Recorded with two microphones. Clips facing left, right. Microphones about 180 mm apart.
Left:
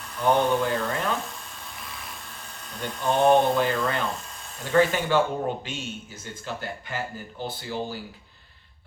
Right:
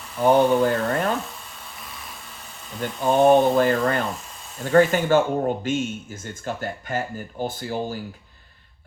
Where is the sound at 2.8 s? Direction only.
45° right (ahead or behind).